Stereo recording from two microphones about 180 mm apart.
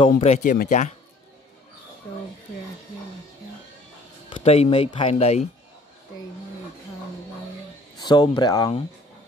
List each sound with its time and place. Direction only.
0.0 s speech: 35° left (ahead or behind)
4.3 s speech: 30° left (ahead or behind)
8.0 s speech: 25° left (ahead or behind)